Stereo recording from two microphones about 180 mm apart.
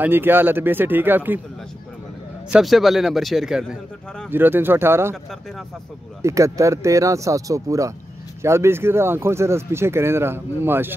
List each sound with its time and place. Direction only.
0.0 s speech: 10° right (ahead or behind)
2.5 s speech: centre (ahead or behind)
6.2 s speech: 15° right (ahead or behind)